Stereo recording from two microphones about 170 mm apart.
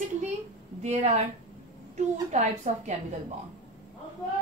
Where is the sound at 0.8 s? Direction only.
40° right (ahead or behind).